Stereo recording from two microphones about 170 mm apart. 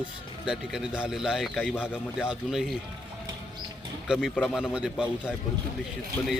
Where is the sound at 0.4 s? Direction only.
5° right (ahead or behind).